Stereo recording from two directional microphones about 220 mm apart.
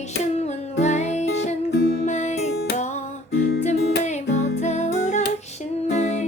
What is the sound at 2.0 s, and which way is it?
Music, 30° left (ahead or behind).